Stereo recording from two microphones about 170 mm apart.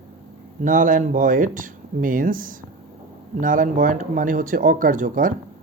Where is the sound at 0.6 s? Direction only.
50° right (ahead or behind).